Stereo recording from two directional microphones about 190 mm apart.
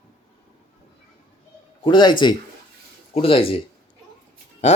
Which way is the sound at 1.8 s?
25° left (ahead or behind).